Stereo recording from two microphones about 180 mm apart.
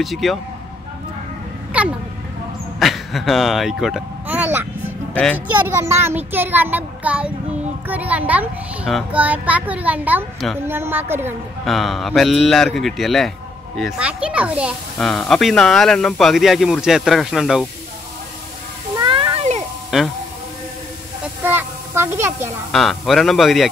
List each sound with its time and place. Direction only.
0.0 s speech: centre (ahead or behind)
1.7 s vehicle: 5° right (ahead or behind)
5.1 s speech: 10° left (ahead or behind)
5.5 s a child's voice: 15° right (ahead or behind)
11.6 s speech: centre (ahead or behind)
18.9 s a sound: 25° right (ahead or behind)
19.9 s speech: centre (ahead or behind)
21.5 s a sound: 10° right (ahead or behind)
22.7 s speech: centre (ahead or behind)